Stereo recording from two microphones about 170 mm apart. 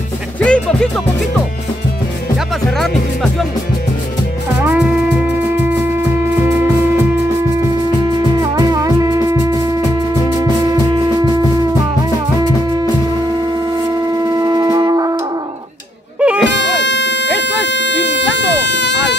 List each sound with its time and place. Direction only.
0.4 s speech: 5° left (ahead or behind)
2.8 s speech: centre (ahead or behind)
4.6 s music: 10° right (ahead or behind)
8.4 s music: 20° right (ahead or behind)
14.4 s shofar: 25° right (ahead or behind)
16.2 s music: 5° right (ahead or behind)
16.4 s music: 90° left